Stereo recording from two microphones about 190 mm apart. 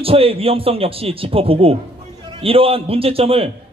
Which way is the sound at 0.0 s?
30° right (ahead or behind).